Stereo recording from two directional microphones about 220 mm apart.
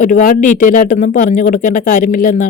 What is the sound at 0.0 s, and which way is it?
A man's voice, 40° left (ahead or behind).